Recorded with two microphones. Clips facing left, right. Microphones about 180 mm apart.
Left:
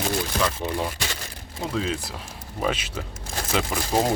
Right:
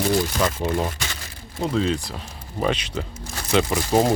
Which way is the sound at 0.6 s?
35° right (ahead or behind).